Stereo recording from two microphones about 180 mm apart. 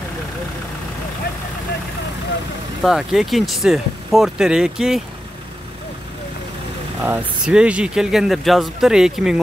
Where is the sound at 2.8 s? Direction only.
Centre (ahead or behind).